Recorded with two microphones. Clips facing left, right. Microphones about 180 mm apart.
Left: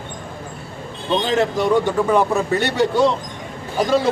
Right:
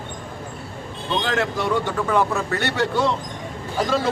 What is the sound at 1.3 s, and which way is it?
A man's voice, 15° left (ahead or behind).